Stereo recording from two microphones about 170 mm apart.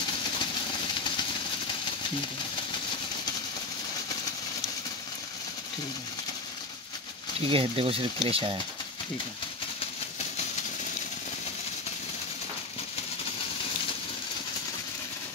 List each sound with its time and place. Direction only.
7.4 s speech: 35° right (ahead or behind)